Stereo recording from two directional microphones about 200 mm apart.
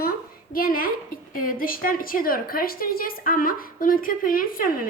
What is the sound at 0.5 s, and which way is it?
A woman's voice, 45° left (ahead or behind).